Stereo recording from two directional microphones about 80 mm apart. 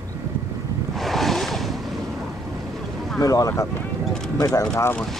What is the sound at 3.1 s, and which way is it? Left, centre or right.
Speech, left.